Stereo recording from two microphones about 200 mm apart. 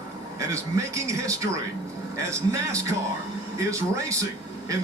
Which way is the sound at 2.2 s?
15° right (ahead or behind).